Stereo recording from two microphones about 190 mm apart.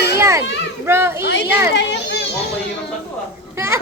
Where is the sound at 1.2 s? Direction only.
70° left (ahead or behind).